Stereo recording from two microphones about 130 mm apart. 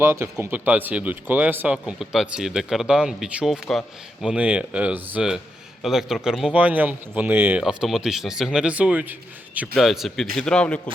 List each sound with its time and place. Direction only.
0.0 s speech: 20° right (ahead or behind)
7.6 s speech: 5° right (ahead or behind)
9.7 s speech: centre (ahead or behind)